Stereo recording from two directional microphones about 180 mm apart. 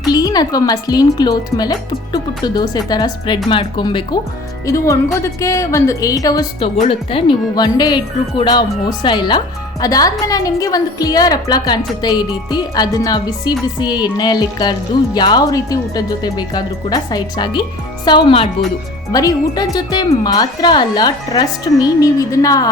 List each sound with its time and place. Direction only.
0.0 s a woman's voice: 20° left (ahead or behind)
6.8 s speech: 30° left (ahead or behind)